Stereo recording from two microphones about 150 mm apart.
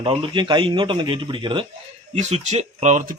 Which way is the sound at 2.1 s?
45° right (ahead or behind).